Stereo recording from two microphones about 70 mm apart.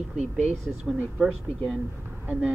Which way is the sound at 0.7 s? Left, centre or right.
Right.